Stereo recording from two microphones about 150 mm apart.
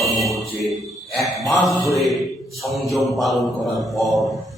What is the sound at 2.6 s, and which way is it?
Mantra, centre (ahead or behind).